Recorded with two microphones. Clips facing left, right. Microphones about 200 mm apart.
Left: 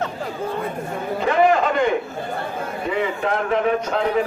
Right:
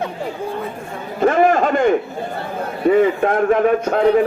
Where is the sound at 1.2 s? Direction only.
50° right (ahead or behind).